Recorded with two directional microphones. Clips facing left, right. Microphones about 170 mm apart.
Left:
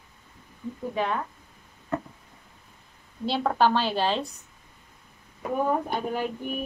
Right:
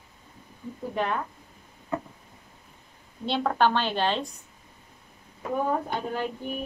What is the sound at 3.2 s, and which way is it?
A woman's voice, 5° left (ahead or behind).